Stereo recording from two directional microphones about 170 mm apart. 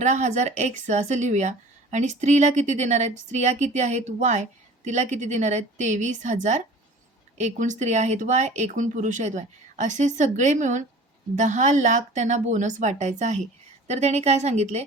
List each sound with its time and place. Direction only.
0.0 s a woman's voice: 45° right (ahead or behind)